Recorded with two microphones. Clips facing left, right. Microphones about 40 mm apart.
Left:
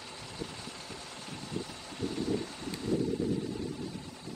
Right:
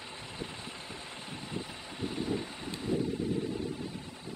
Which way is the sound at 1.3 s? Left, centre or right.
Right.